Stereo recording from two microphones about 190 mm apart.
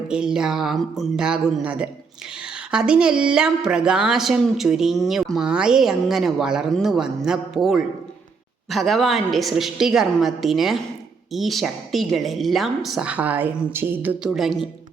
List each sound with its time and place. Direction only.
0.1 s a woman's voice: 5° right (ahead or behind)